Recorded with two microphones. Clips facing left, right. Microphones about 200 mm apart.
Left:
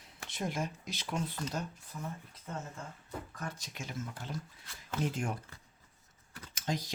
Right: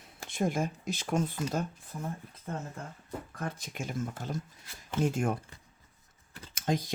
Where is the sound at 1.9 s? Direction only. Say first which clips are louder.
Right 4 dB; 40° right (ahead or behind).